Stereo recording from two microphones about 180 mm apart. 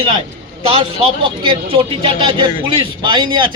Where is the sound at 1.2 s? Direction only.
30° right (ahead or behind).